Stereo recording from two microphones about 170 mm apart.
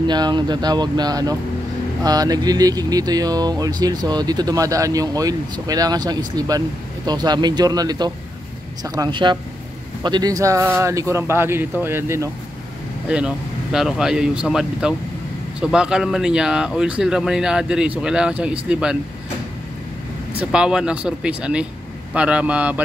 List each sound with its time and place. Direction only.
0.0 s speech: 25° right (ahead or behind); by 18.9 s 5° right (ahead or behind)
20.3 s speech: 5° right (ahead or behind)